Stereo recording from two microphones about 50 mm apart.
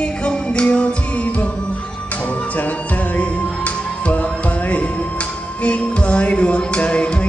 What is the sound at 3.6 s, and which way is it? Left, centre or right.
Speech, left.